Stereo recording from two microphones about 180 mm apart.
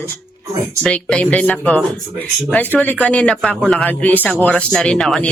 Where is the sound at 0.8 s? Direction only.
5° left (ahead or behind).